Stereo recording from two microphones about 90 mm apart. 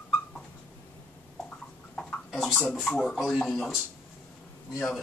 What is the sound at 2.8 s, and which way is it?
Speech, 10° left (ahead or behind).